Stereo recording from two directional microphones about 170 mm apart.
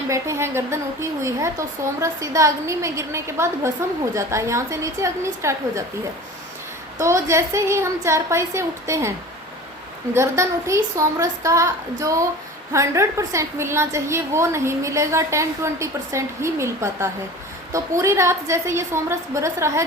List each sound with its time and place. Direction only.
0.1 s a woman's voice: 15° right (ahead or behind)
7.0 s a woman's voice: 15° right (ahead or behind)
10.2 s a woman's voice: 15° right (ahead or behind)